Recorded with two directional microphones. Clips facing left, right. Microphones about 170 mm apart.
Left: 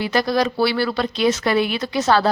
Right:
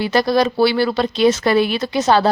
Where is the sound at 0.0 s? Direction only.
30° right (ahead or behind).